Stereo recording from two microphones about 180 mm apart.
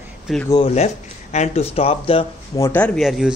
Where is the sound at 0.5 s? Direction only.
35° left (ahead or behind).